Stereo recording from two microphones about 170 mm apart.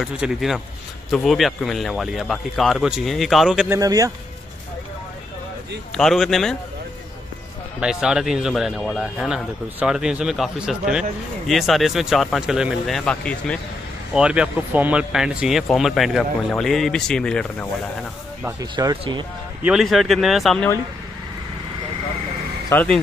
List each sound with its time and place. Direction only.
0.0 s speech: centre (ahead or behind)
3.7 s speech: 20° right (ahead or behind)
5.9 s speech: centre (ahead or behind)
7.8 s speech: 5° right (ahead or behind)
14.1 s speech: 5° right (ahead or behind)
18.4 s speech: 20° right (ahead or behind)
19.6 s speech: centre (ahead or behind)
22.7 s a man's voice: 15° left (ahead or behind)